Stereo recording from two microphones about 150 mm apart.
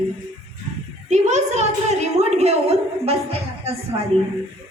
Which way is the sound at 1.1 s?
50° right (ahead or behind).